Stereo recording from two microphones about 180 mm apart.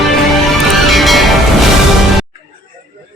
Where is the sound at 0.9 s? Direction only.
Centre (ahead or behind).